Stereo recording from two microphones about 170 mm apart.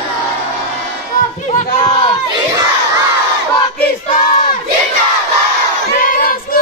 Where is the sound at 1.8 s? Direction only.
30° left (ahead or behind).